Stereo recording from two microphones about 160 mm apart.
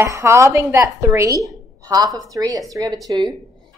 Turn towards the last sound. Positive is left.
turn(degrees=-20)  # may be behind; listen again after turning